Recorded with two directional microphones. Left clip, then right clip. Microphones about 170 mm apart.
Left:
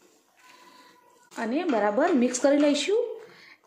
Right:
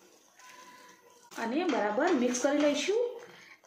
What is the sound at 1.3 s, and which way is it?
Speech, 70° left (ahead or behind).